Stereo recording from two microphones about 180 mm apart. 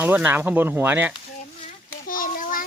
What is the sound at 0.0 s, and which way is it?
Speech, 10° right (ahead or behind).